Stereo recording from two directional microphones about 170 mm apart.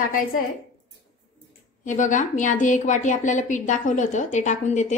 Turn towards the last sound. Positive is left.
turn(degrees=45)  # may be behind; listen again after turning